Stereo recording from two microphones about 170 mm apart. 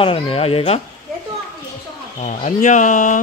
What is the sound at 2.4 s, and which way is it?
Speech, 45° left (ahead or behind).